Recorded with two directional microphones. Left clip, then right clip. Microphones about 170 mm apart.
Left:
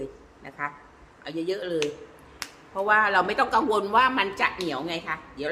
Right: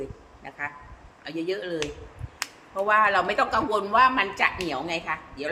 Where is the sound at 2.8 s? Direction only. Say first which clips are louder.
Even; 15° left (ahead or behind).